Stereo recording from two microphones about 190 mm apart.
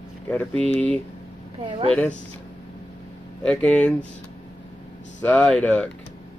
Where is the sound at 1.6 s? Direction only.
30° right (ahead or behind).